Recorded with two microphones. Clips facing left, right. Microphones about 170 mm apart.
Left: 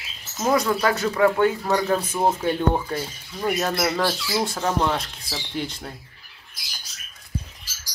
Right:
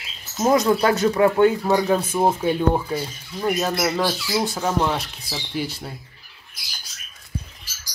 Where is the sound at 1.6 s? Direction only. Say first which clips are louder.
Right 3 dB; 10° right (ahead or behind).